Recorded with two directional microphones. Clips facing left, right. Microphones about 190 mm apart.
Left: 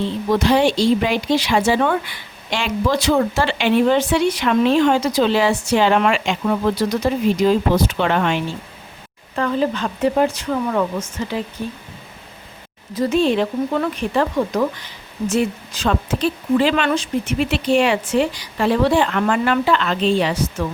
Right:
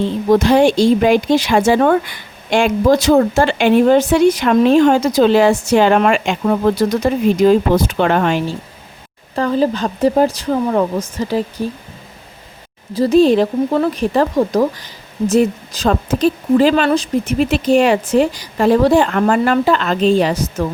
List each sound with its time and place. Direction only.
0.0 s speech: 45° right (ahead or behind)
12.9 s speech: 35° right (ahead or behind)